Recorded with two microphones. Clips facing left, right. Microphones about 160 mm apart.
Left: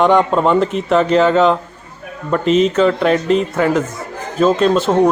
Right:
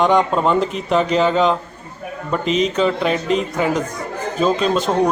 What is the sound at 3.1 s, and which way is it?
Speech, 40° left (ahead or behind).